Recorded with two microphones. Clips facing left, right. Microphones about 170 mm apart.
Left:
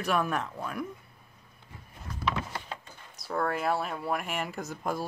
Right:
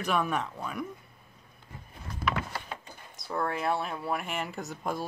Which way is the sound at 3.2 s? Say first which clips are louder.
Left 1 dB; centre (ahead or behind).